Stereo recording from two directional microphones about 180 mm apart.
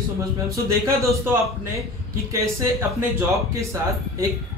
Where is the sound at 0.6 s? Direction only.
15° right (ahead or behind).